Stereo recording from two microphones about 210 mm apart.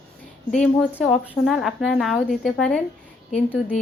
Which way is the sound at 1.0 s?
Centre (ahead or behind).